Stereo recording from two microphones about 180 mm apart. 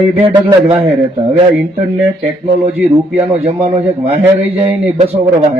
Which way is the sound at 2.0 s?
35° right (ahead or behind).